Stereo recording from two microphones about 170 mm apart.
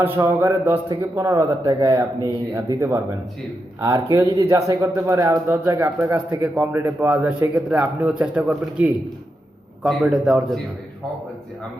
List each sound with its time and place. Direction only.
0.0 s a man's voice: 15° right (ahead or behind)